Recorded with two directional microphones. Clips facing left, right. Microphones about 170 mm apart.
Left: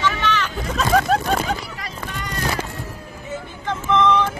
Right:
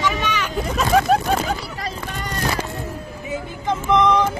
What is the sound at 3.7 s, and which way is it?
Vehicle, 15° right (ahead or behind).